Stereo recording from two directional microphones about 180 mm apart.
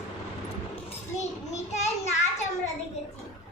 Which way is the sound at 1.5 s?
40° left (ahead or behind).